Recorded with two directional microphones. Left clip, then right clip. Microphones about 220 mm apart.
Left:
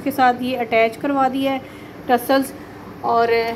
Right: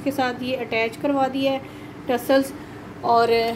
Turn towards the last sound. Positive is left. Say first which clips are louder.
# left 1 dB
turn(degrees=-15)  # may be behind; listen again after turning